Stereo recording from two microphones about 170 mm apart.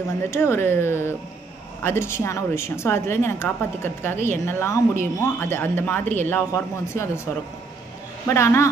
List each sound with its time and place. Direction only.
0.3 s speech: 15° left (ahead or behind)
8.3 s speech: 15° left (ahead or behind)